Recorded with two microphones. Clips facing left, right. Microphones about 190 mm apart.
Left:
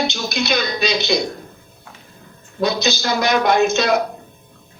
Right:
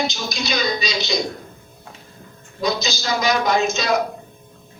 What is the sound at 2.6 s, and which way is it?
A woman's voice, 60° left (ahead or behind).